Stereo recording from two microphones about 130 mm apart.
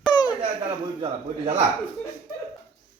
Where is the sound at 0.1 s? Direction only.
35° left (ahead or behind).